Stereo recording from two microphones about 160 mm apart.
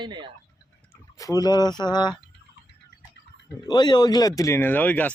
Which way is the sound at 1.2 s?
25° left (ahead or behind).